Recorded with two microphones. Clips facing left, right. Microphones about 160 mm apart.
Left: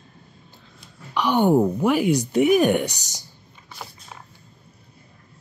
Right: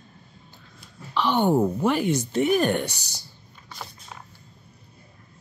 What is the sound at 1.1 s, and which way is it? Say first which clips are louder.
Speech: left 3 dB; 15° left (ahead or behind).